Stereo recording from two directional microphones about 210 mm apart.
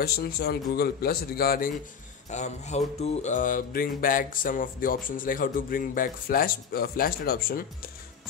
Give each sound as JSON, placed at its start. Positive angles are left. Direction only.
{"t": 0.0, "sound": "a man's voice", "side_deg": 50}
{"t": 2.2, "sound": "music", "side_deg": 35}